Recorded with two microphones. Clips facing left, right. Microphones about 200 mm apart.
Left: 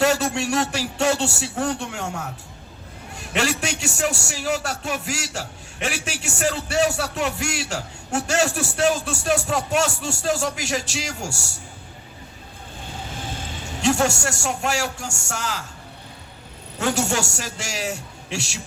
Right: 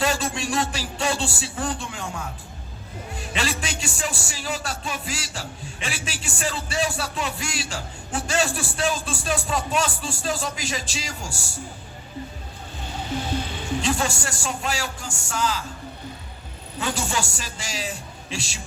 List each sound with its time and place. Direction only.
0.0 s a man's voice: 70° left (ahead or behind)
3.3 s a man's voice: 70° left (ahead or behind)
13.8 s a man's voice: 70° left (ahead or behind)
16.7 s a man's voice: 70° left (ahead or behind)